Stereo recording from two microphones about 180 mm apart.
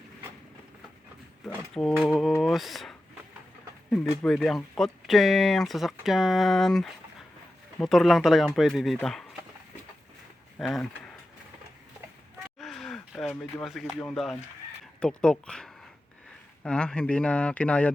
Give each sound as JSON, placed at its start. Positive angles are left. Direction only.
{"t": 2.0, "sound": "speech", "side_deg": 0}
{"t": 10.6, "sound": "speech", "side_deg": 0}
{"t": 12.5, "sound": "a sound", "side_deg": 0}
{"t": 15.0, "sound": "speech", "side_deg": 5}